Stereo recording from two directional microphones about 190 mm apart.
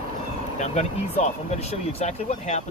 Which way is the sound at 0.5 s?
35° left (ahead or behind).